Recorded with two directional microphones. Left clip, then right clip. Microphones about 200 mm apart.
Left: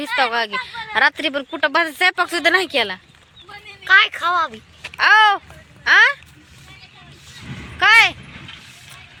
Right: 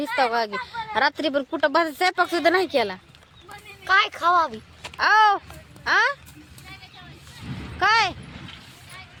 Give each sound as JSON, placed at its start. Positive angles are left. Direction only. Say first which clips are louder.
{"t": 0.2, "sound": "speech", "louder": "left 3 dB", "side_deg": -5}
{"t": 3.8, "sound": "a woman's voice", "louder": "left 5 dB", "side_deg": -15}
{"t": 4.9, "sound": "speech", "louder": "left 5 dB", "side_deg": -5}
{"t": 7.3, "sound": "vehicle", "louder": "left 3 dB", "side_deg": -60}
{"t": 7.8, "sound": "speech", "louder": "left 8 dB", "side_deg": -5}
{"t": 8.2, "sound": "vehicle", "louder": "left 4 dB", "side_deg": -60}